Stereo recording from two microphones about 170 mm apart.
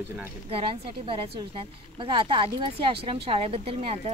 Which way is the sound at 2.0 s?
30° right (ahead or behind).